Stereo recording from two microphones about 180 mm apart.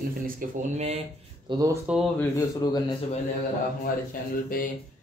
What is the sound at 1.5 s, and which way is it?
Speech, 25° right (ahead or behind).